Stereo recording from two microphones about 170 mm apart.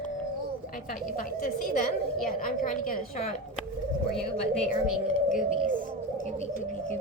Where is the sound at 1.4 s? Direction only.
55° left (ahead or behind).